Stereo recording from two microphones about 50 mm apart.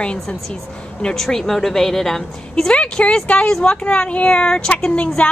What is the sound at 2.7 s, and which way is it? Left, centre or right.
A woman's voice, left.